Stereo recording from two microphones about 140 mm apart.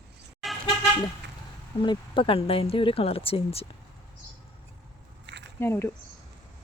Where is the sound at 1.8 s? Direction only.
35° left (ahead or behind).